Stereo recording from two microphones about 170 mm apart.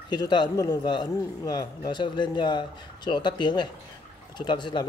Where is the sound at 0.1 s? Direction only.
25° left (ahead or behind).